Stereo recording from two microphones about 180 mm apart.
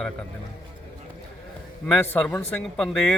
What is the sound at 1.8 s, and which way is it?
Speech, 10° left (ahead or behind).